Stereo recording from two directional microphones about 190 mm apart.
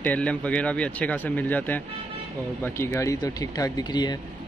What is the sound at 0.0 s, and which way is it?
Speech, 5° left (ahead or behind).